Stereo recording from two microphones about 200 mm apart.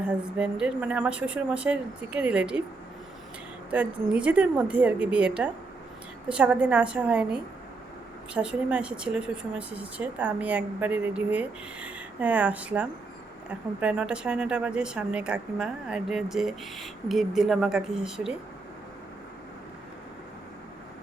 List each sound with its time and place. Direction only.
0.0 s a woman's voice: 5° right (ahead or behind)
3.7 s a woman's voice: 5° right (ahead or behind)